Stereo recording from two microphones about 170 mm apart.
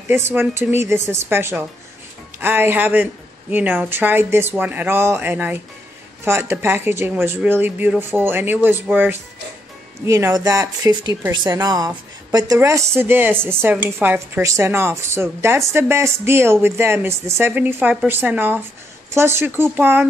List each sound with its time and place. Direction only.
0.1 s speech: 15° right (ahead or behind)